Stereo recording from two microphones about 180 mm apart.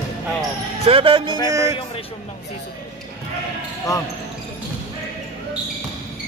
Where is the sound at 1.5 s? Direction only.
15° right (ahead or behind).